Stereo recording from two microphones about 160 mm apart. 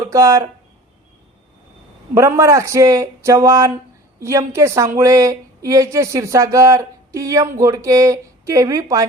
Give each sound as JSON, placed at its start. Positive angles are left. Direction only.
{"t": 0.1, "sound": "a woman's voice", "side_deg": -20}
{"t": 2.1, "sound": "a woman's voice", "side_deg": -20}